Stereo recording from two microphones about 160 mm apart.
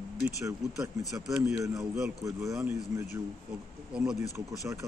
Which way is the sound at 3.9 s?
5° right (ahead or behind).